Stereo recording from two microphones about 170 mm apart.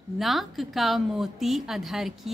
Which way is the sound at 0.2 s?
Centre (ahead or behind).